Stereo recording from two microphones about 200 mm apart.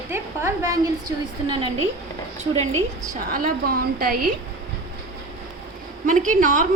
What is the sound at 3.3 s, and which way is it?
A woman's voice, 45° right (ahead or behind).